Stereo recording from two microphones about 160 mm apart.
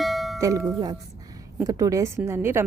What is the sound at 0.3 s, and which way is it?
A woman's voice, 20° right (ahead or behind).